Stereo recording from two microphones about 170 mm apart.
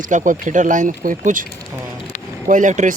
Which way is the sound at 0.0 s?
50° right (ahead or behind).